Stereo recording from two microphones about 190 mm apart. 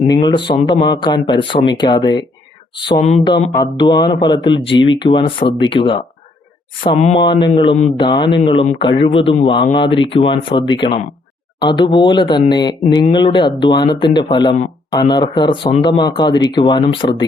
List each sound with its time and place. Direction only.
0.0 s speech: 25° left (ahead or behind)
7.0 s speech: 30° left (ahead or behind)